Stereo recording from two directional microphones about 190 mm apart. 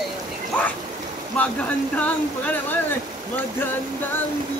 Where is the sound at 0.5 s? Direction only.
10° left (ahead or behind).